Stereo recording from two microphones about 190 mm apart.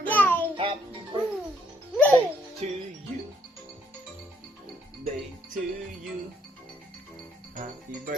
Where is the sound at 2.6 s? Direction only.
35° right (ahead or behind).